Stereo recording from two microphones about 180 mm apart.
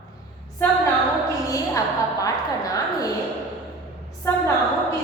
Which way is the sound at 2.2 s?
20° left (ahead or behind).